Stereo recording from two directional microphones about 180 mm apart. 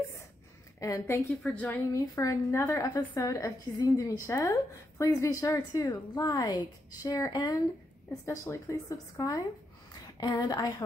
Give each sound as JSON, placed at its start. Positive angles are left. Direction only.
{"t": 0.7, "sound": "a woman's voice", "side_deg": 15}
{"t": 1.4, "sound": "a woman's voice", "side_deg": 5}
{"t": 2.0, "sound": "a woman's voice", "side_deg": 15}